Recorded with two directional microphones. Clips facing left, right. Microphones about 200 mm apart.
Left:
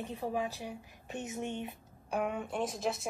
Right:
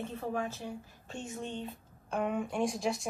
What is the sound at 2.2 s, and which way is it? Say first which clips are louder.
Speech: right 3 dB; centre (ahead or behind).